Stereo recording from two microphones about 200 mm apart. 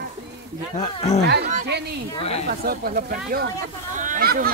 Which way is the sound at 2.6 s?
50° right (ahead or behind).